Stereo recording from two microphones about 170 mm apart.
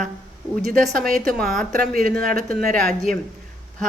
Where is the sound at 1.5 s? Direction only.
Centre (ahead or behind).